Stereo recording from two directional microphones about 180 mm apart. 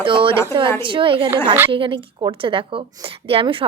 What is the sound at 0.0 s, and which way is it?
A woman's voice, 30° right (ahead or behind).